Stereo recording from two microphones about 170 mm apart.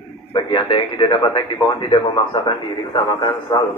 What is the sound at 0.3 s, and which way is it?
A man's voice, 30° left (ahead or behind).